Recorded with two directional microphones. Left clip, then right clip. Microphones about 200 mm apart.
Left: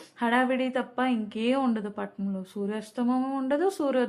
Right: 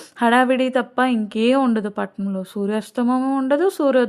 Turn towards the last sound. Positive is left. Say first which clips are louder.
# right 9 dB
turn(degrees=-35)  # may be behind; listen again after turning